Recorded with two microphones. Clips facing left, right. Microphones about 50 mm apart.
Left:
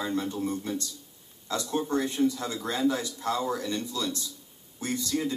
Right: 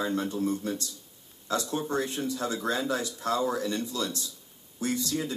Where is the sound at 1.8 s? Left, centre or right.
Right.